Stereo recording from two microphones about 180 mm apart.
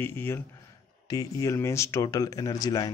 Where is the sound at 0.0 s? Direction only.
10° left (ahead or behind).